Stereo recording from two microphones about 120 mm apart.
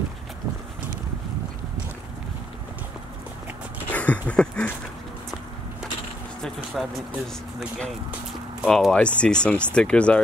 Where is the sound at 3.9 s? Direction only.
10° left (ahead or behind).